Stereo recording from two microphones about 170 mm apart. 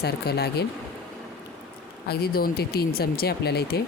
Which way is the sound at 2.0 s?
65° left (ahead or behind).